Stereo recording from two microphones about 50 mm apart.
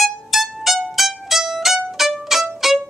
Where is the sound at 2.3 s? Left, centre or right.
Centre.